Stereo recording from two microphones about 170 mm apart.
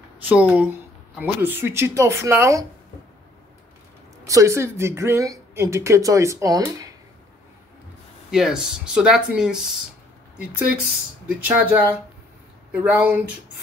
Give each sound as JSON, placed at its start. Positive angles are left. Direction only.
{"t": 0.3, "sound": "speech", "side_deg": -10}
{"t": 4.3, "sound": "speech", "side_deg": -20}
{"t": 8.3, "sound": "speech", "side_deg": -5}
{"t": 11.2, "sound": "speech", "side_deg": -10}